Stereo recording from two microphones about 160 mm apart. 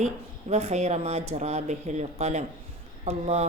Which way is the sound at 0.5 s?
45° right (ahead or behind).